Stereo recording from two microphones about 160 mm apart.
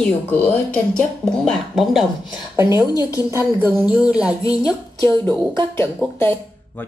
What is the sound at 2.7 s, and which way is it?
Speech, 25° left (ahead or behind).